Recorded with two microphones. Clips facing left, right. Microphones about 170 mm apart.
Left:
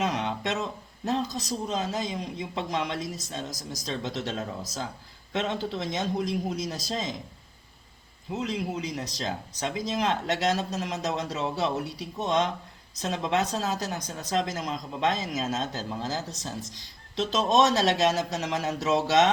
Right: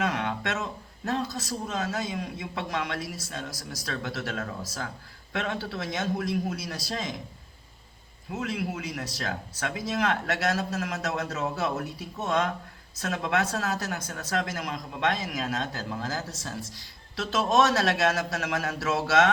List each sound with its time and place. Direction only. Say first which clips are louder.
0.0 s speech: even; 20° left (ahead or behind)
8.3 s speech: left 1 dB; 20° left (ahead or behind)